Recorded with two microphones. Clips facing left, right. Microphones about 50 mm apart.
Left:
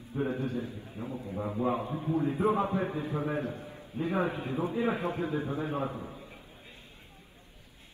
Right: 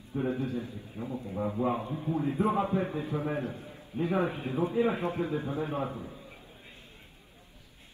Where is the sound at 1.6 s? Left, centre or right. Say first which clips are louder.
Left 2 dB; left.